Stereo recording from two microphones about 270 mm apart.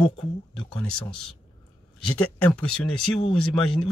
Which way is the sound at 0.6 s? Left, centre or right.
Centre.